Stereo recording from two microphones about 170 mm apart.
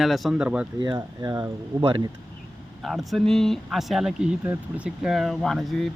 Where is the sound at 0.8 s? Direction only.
20° right (ahead or behind).